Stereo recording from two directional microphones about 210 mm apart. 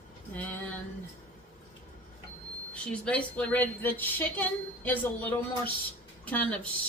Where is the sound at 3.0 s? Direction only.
5° left (ahead or behind).